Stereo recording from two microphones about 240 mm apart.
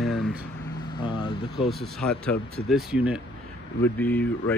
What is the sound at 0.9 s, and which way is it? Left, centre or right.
Speech, centre.